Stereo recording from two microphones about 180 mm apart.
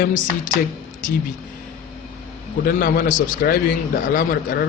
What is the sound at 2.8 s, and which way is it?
Speech, 55° left (ahead or behind).